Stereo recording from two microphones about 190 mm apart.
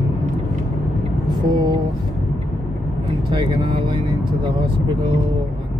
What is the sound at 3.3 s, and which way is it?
Speech, 25° right (ahead or behind).